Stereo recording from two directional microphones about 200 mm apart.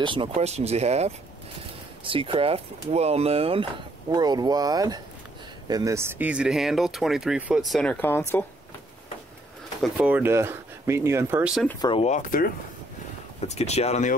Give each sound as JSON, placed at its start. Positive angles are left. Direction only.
{"t": 0.0, "sound": "speech", "side_deg": -25}
{"t": 9.8, "sound": "speech", "side_deg": -5}
{"t": 11.8, "sound": "speech", "side_deg": 25}
{"t": 12.1, "sound": "speech", "side_deg": 40}